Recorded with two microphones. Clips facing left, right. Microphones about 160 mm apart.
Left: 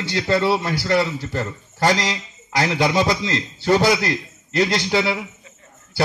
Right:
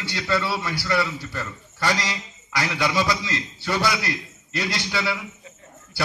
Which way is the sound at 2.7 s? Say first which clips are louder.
Left 3 dB; 45° left (ahead or behind).